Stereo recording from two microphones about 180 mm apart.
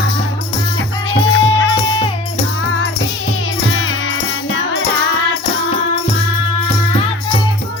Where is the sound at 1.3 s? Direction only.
90° left.